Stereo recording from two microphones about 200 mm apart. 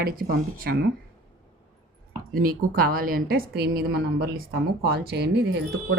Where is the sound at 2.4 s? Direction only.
45° right (ahead or behind).